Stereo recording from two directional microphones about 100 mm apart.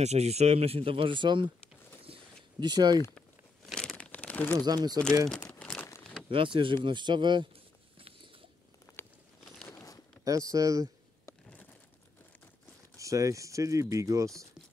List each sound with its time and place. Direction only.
0.0 s speech: 90° right; by 1.5 s 50° right (ahead or behind)
2.1 s a sound: 65° right (ahead or behind)
2.6 s speech: 45° right (ahead or behind)
3.2 s a sound: 5° left (ahead or behind)
3.9 s crumpling: 15° left (ahead or behind)
4.6 s speech: 40° right (ahead or behind)
5.5 s crumpling: 15° left (ahead or behind)
6.2 s speech: 60° right (ahead or behind)
9.7 s a sound: 35° left (ahead or behind)
10.2 s speech: 35° right (ahead or behind)
12.9 s speech: 35° right (ahead or behind)